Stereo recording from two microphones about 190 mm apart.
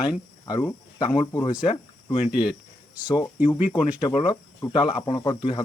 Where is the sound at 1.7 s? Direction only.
25° left (ahead or behind).